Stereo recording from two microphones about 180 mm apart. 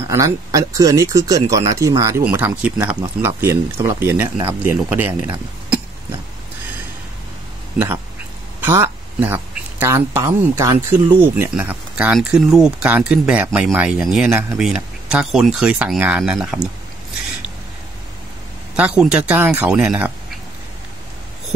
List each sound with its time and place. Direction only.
0.1 s speech: 20° right (ahead or behind)
8.5 s speech: 15° right (ahead or behind)
18.8 s speech: 5° right (ahead or behind)